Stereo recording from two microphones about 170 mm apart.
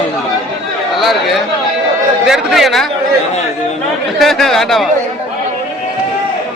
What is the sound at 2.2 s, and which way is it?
Speech, centre (ahead or behind).